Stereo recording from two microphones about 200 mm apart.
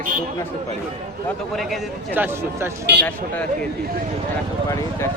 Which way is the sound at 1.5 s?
Centre (ahead or behind).